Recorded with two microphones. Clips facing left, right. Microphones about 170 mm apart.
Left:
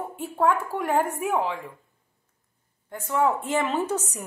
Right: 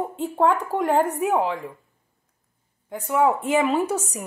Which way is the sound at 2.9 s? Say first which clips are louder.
Right 3 dB; 15° right (ahead or behind).